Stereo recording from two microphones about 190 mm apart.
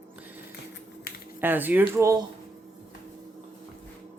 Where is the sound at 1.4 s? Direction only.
10° right (ahead or behind).